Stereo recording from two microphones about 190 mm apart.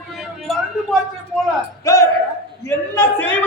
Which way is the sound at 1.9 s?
15° left (ahead or behind).